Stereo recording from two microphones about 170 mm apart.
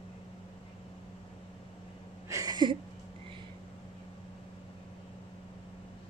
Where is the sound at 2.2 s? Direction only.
20° right (ahead or behind).